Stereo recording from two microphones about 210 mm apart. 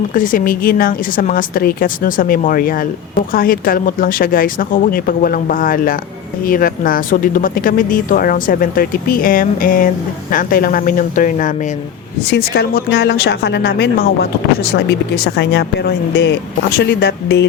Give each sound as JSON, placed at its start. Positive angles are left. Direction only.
{"t": 0.1, "sound": "speech", "side_deg": 40}
{"t": 12.3, "sound": "speech", "side_deg": 50}